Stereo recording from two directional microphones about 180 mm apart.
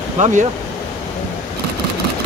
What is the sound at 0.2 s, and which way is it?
Speech, 45° right (ahead or behind).